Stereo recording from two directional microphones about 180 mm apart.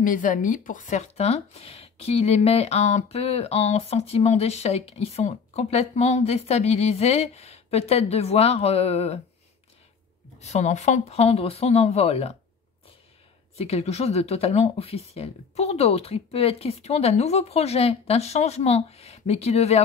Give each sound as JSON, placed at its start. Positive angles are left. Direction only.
{"t": 0.0, "sound": "speech", "side_deg": 45}
{"t": 10.4, "sound": "speech", "side_deg": 40}
{"t": 13.6, "sound": "speech", "side_deg": 35}